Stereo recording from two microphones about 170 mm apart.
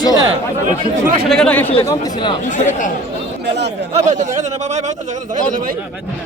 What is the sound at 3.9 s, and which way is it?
A man's voice, 45° right (ahead or behind).